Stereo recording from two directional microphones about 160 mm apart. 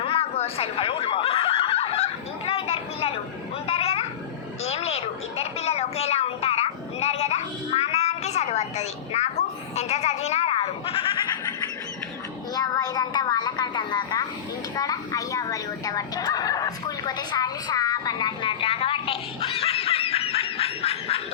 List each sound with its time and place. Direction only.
0.0 s snicker: 35° left (ahead or behind)
2.5 s a sound: 35° left (ahead or behind)
4.6 s a child's voice: 40° left (ahead or behind)
12.5 s a woman's voice: 20° left (ahead or behind); by 21.2 s 40° left (ahead or behind)